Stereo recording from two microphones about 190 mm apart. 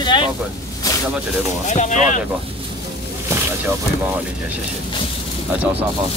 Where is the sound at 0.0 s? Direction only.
25° left (ahead or behind).